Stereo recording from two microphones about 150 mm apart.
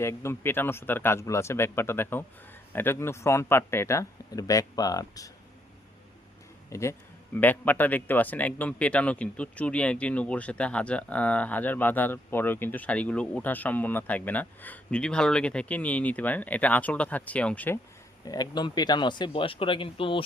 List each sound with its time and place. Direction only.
0.0 s speech: 15° left (ahead or behind)
6.7 s speech: 20° left (ahead or behind)
18.3 s speech: 30° left (ahead or behind)